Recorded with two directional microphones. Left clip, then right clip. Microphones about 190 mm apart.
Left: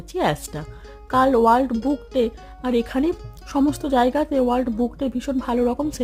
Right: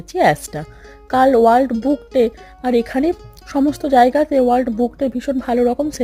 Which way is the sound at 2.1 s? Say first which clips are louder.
Right 6 dB; 20° right (ahead or behind).